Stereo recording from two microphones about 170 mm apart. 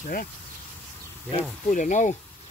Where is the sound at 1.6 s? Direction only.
50° left (ahead or behind).